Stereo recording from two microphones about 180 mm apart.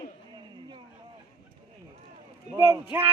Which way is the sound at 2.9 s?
10° right (ahead or behind).